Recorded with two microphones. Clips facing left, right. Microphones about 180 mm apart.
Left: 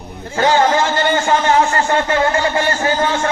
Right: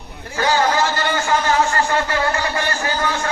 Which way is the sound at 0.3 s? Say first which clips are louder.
Left 4 dB; 25° left (ahead or behind).